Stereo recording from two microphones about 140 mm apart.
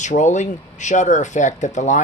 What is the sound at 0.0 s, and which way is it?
Speech, 60° left (ahead or behind).